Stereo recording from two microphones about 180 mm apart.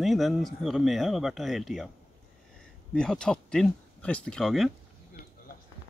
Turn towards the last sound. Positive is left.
turn(degrees=0)  # may be behind; listen again after turning